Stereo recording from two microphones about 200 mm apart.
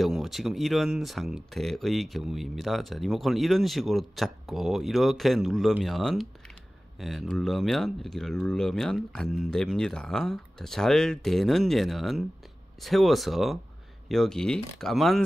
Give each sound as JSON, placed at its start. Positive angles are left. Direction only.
{"t": 0.0, "sound": "speech", "side_deg": 0}